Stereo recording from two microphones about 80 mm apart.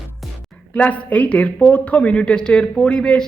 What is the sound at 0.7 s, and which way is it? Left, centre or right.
A man's voice, centre.